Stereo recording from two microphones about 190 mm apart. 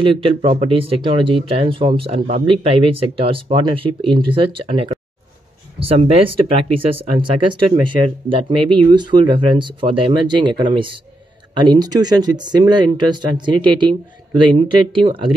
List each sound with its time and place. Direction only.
0.0 s speech: 25° right (ahead or behind)
15.0 s speech: 25° right (ahead or behind)